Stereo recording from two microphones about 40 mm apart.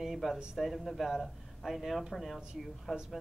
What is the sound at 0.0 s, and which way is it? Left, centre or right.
Speech, centre.